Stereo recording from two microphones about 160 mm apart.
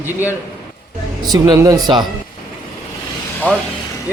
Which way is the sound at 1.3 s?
25° right (ahead or behind).